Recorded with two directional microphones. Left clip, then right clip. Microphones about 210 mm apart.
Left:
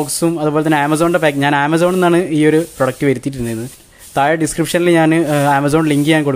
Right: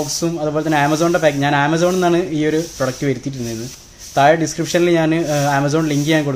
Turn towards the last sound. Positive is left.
turn(degrees=40)  # may be behind; listen again after turning